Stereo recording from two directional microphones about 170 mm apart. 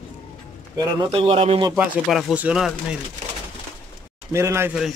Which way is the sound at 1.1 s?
35° right (ahead or behind).